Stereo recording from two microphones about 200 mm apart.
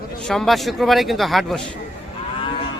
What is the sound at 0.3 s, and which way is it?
A man's voice, centre (ahead or behind).